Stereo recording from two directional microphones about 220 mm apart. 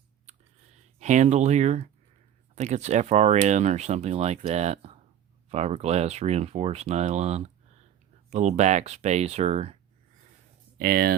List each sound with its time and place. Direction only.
0.3 s a sound: 30° right (ahead or behind)
0.9 s speech: 35° right (ahead or behind)
10.8 s speech: 45° right (ahead or behind)